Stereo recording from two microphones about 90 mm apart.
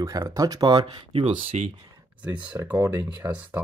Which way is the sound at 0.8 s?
90° right.